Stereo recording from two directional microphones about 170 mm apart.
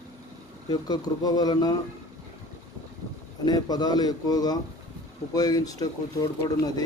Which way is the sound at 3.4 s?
25° left (ahead or behind).